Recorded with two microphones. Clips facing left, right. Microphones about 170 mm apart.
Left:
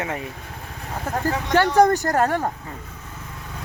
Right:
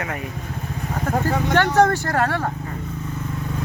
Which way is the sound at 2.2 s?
20° left (ahead or behind).